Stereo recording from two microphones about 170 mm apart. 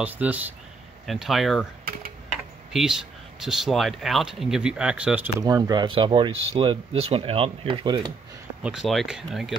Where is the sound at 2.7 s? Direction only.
Centre (ahead or behind).